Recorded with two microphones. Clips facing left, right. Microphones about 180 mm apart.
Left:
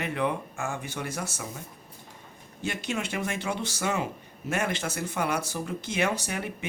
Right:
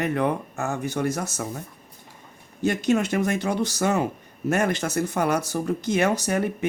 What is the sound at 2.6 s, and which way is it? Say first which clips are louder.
Speech: right 10 dB; 40° right (ahead or behind).